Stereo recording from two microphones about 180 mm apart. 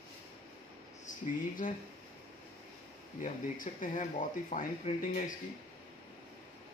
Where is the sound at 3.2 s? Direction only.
45° left (ahead or behind).